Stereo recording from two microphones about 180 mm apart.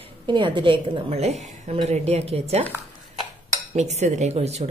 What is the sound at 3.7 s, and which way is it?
Speech, 40° right (ahead or behind).